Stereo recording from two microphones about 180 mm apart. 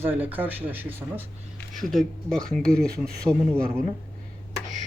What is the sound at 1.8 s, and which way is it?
Speech, centre (ahead or behind).